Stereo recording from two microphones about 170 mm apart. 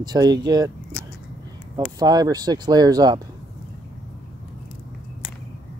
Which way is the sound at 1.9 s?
25° right (ahead or behind).